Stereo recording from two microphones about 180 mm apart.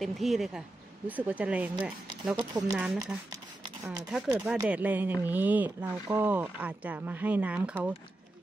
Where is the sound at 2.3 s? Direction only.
20° right (ahead or behind).